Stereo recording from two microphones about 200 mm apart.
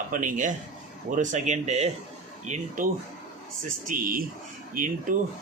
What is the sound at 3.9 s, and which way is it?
Speech, 45° right (ahead or behind).